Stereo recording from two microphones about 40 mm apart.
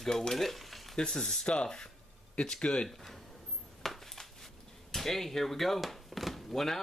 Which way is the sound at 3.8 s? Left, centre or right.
Centre.